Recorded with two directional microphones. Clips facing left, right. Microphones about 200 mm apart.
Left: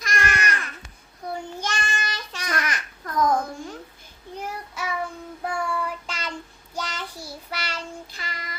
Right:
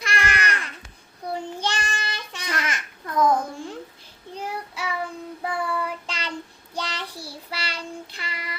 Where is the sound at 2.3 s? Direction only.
25° right (ahead or behind).